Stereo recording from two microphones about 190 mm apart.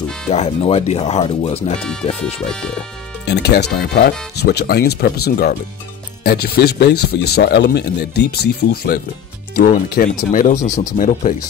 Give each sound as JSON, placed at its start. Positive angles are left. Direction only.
{"t": 0.3, "sound": "speech", "side_deg": 35}
{"t": 1.8, "sound": "speech", "side_deg": 5}
{"t": 3.3, "sound": "speech", "side_deg": 60}
{"t": 10.5, "sound": "speech", "side_deg": 15}
{"t": 11.0, "sound": "speech", "side_deg": 45}